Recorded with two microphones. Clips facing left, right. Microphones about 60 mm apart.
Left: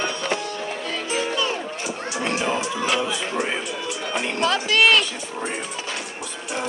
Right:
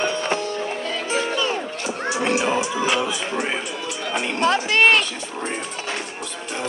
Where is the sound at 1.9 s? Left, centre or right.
Right.